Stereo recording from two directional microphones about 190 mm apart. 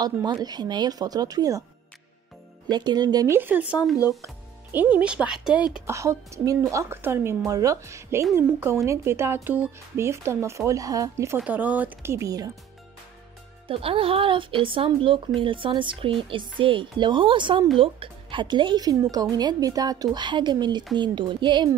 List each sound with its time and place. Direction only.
0.0 s speech: 20° right (ahead or behind)
2.7 s speech: 20° right (ahead or behind); by 5.6 s 5° right (ahead or behind)
5.9 s speech: 15° right (ahead or behind)
13.7 s speech: 30° right (ahead or behind)